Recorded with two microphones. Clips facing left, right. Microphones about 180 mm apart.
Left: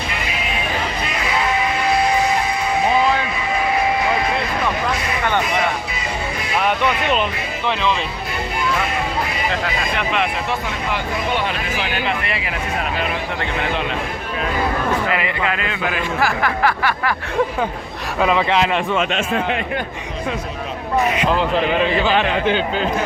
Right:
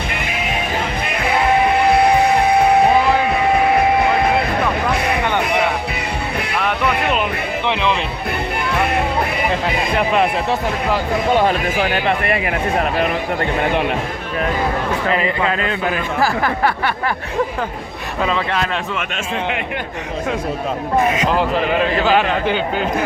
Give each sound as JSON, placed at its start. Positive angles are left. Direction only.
{"t": 0.1, "sound": "music", "side_deg": -55}
{"t": 4.9, "sound": "vehicle", "side_deg": -60}
{"t": 5.4, "sound": "music", "side_deg": -60}
{"t": 7.0, "sound": "music", "side_deg": -5}
{"t": 7.7, "sound": "a man's voice", "side_deg": -15}
{"t": 8.7, "sound": "music", "side_deg": -60}
{"t": 10.0, "sound": "speech", "side_deg": -35}
{"t": 15.1, "sound": "speech", "side_deg": -35}
{"t": 18.2, "sound": "speech", "side_deg": 10}
{"t": 21.3, "sound": "a man's voice", "side_deg": -5}